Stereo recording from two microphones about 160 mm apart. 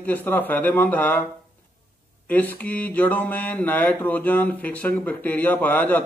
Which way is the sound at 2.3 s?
10° left (ahead or behind).